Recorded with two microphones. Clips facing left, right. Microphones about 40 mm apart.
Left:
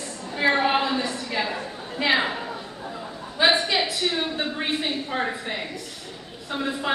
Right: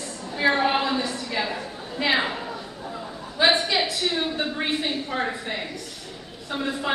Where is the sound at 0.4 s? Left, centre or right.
Centre.